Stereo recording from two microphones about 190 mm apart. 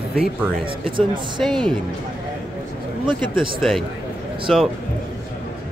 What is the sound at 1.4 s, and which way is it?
Speech, centre (ahead or behind).